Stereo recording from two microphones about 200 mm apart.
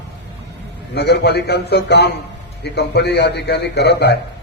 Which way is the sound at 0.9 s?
55° left (ahead or behind).